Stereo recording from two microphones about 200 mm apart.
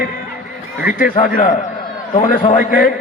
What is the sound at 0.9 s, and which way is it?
A man's voice, 45° left (ahead or behind).